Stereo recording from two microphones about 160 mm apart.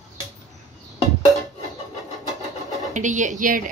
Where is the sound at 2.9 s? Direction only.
50° right (ahead or behind).